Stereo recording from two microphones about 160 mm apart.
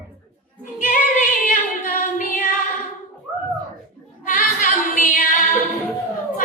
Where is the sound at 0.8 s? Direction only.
55° left (ahead or behind).